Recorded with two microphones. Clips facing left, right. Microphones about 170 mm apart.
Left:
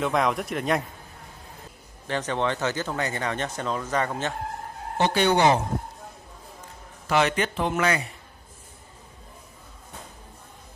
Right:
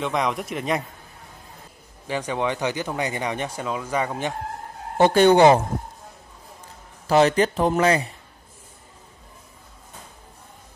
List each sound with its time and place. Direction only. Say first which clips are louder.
0.0 s speech: left 1 dB; centre (ahead or behind)
2.0 s speech: right 1 dB; 10° right (ahead or behind)
4.9 s speech: right 7 dB; 50° right (ahead or behind)
7.1 s speech: right 6 dB; 35° right (ahead or behind)